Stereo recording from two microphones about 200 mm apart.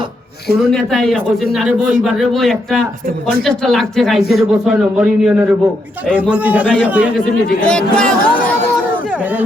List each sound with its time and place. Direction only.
0.6 s a man's voice: centre (ahead or behind)
7.2 s speech: 5° left (ahead or behind)